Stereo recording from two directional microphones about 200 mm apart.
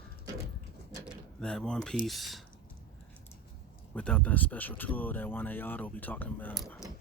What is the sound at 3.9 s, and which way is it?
Speech, 5° left (ahead or behind).